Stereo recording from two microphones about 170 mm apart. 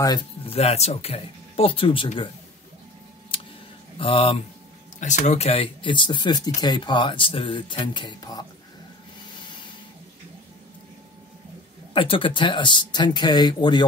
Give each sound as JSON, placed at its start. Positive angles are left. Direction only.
{"t": 0.5, "sound": "speech", "side_deg": 35}
{"t": 3.3, "sound": "a sound", "side_deg": 30}
{"t": 4.0, "sound": "speech", "side_deg": 30}
{"t": 5.0, "sound": "speech", "side_deg": 45}
{"t": 11.9, "sound": "speech", "side_deg": 30}